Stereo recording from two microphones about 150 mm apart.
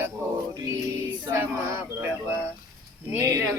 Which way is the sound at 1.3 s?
15° right (ahead or behind).